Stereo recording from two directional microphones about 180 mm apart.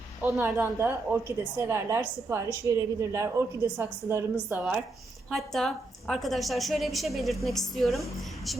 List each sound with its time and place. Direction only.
0.2 s a woman's voice: 15° right (ahead or behind)
5.3 s a woman's voice: centre (ahead or behind)